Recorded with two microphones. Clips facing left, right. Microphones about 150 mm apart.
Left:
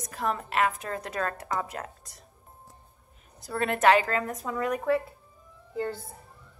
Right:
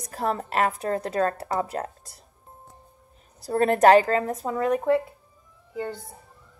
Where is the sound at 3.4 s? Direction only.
40° right (ahead or behind).